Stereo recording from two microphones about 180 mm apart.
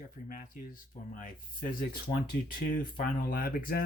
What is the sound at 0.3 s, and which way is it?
Speech, 50° left (ahead or behind).